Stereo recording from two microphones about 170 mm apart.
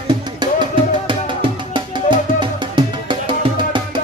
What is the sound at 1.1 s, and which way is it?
Music, 30° right (ahead or behind).